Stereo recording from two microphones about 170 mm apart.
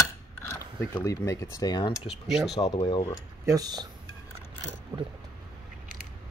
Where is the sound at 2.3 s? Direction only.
Centre (ahead or behind).